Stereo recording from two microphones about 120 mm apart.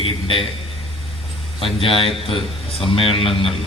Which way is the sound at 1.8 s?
50° left (ahead or behind).